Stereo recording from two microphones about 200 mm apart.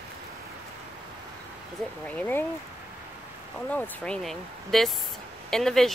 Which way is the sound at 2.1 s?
10° left (ahead or behind).